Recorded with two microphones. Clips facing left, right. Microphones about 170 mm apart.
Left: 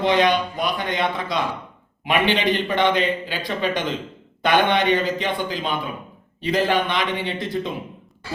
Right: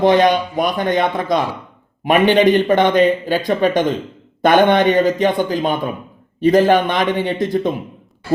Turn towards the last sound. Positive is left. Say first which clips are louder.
# right 8 dB
turn(degrees=-45)  # may be behind; listen again after turning